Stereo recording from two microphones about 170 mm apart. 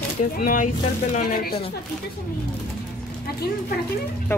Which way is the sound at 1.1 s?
60° left (ahead or behind).